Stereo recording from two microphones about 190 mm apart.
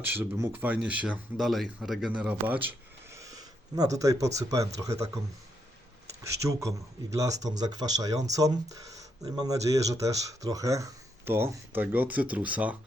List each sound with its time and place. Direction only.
0.0 s speech: 10° right (ahead or behind)
6.4 s speech: 15° right (ahead or behind)